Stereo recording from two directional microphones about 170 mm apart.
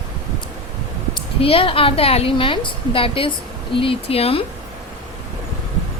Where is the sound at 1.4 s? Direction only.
35° left (ahead or behind).